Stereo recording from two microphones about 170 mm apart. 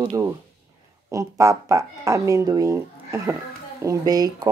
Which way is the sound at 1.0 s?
20° right (ahead or behind).